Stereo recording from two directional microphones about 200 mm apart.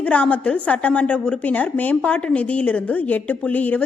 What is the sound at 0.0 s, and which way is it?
A woman's voice, 5° left (ahead or behind).